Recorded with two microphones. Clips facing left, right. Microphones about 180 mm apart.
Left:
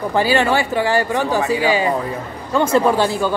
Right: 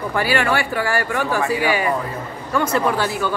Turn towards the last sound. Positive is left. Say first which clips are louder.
# left 5 dB
turn(degrees=30)  # may be behind; listen again after turning